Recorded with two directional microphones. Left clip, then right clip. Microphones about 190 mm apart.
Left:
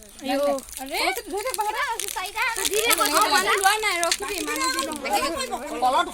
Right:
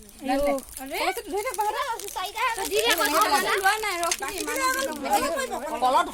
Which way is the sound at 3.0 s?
35° left (ahead or behind).